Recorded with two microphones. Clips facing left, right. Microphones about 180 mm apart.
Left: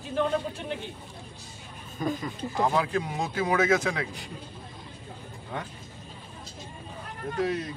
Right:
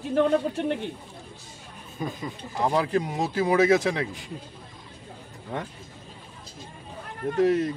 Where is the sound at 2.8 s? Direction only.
35° right (ahead or behind).